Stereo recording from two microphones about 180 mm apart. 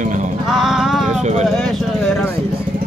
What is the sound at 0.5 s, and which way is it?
Music, centre (ahead or behind).